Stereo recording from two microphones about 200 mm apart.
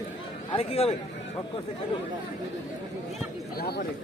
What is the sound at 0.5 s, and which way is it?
Speech, 30° left (ahead or behind).